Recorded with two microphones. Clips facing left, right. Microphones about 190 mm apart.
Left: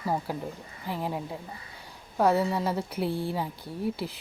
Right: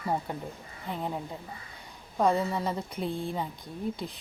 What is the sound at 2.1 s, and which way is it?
A woman's voice, 5° left (ahead or behind).